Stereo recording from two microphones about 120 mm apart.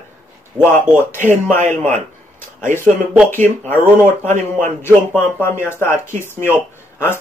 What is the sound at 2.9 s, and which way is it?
Speech, 10° left (ahead or behind).